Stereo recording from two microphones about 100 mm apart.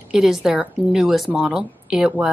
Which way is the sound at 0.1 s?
5° right (ahead or behind).